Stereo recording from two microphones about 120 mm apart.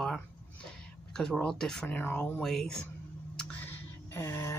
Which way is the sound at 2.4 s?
5° left (ahead or behind).